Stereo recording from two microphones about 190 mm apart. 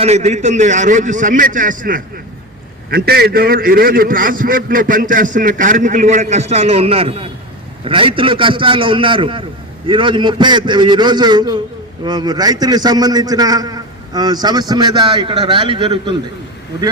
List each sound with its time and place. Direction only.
0.0 s a man's voice: 35° right (ahead or behind)